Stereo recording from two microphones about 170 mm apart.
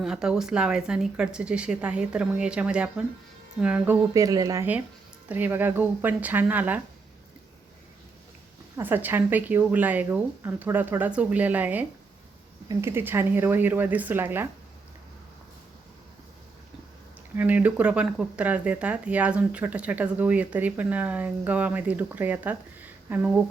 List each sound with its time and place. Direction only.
0.0 s speech: 5° right (ahead or behind)
4.1 s speech: 20° right (ahead or behind)
8.7 s speech: 10° right (ahead or behind)
17.3 s speech: 10° right (ahead or behind)